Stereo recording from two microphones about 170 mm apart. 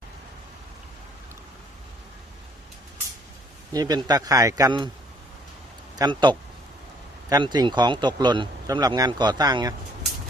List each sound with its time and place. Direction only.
3.7 s speech: 25° right (ahead or behind)
6.0 s speech: 25° right (ahead or behind)